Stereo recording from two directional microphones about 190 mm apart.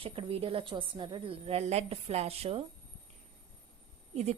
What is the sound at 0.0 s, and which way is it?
A woman's voice, 30° right (ahead or behind).